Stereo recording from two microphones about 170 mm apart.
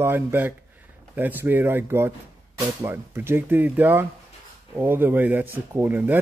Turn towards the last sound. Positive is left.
turn(degrees=-10)  # may be behind; listen again after turning